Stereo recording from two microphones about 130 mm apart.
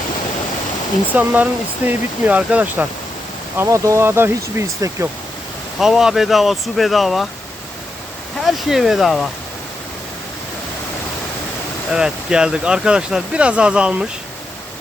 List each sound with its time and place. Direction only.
1.1 s speech: 15° right (ahead or behind)
3.6 s speech: 25° right (ahead or behind)
5.8 s speech: 5° right (ahead or behind)
8.4 s speech: centre (ahead or behind)
11.9 s speech: 5° right (ahead or behind)